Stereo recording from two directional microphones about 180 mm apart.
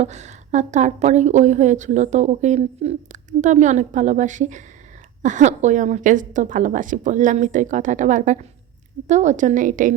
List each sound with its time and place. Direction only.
0.0 s a woman's voice: 40° right (ahead or behind)